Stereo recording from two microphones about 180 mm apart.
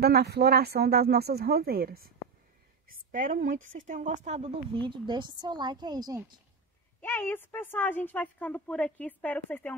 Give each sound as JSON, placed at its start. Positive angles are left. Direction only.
{"t": 0.0, "sound": "a woman's voice", "side_deg": -65}
{"t": 7.0, "sound": "a woman's voice", "side_deg": 10}